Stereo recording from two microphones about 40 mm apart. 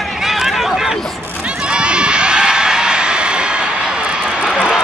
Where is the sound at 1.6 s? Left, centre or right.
Right.